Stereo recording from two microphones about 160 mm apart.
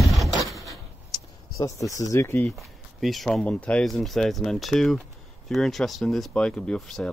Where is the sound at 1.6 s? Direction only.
20° left (ahead or behind).